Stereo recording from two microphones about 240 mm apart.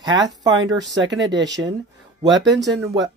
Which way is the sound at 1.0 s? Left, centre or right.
Right.